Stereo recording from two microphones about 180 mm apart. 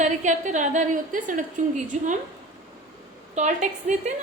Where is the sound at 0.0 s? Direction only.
40° right (ahead or behind).